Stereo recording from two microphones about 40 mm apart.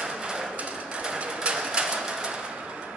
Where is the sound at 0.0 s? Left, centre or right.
Centre.